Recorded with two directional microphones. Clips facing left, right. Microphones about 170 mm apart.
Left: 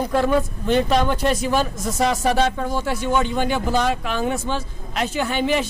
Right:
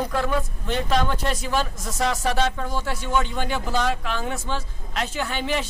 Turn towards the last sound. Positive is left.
turn(degrees=15)  # may be behind; listen again after turning